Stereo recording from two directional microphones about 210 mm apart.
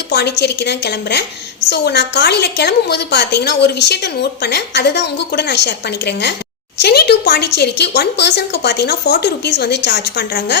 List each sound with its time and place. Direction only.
0.1 s a woman's voice: 55° left (ahead or behind)